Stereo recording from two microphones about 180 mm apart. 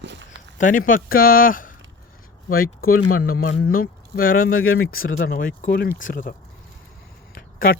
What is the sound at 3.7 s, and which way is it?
Speech, 50° left (ahead or behind).